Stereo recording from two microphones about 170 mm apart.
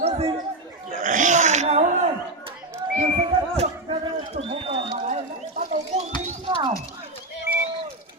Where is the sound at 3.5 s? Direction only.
35° right (ahead or behind).